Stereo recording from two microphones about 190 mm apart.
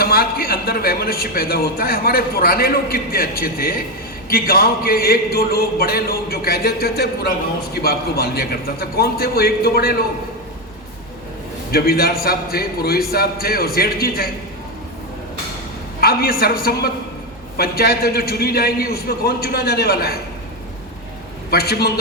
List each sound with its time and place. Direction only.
0.0 s a man's voice: 55° left (ahead or behind)
11.7 s a man's voice: 55° left (ahead or behind)
16.0 s a man's voice: 50° left (ahead or behind)
21.5 s a man's voice: 55° left (ahead or behind)